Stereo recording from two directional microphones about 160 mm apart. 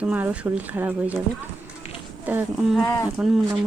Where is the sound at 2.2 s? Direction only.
10° right (ahead or behind).